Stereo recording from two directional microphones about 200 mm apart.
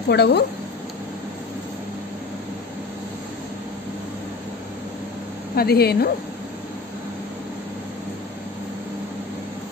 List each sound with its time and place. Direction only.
0.1 s speech: 55° left (ahead or behind)
5.6 s speech: 50° left (ahead or behind)